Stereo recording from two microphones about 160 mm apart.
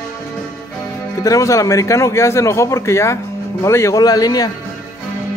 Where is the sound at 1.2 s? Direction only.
20° left (ahead or behind).